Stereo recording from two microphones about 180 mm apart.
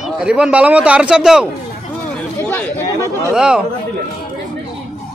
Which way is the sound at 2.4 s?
10° left (ahead or behind).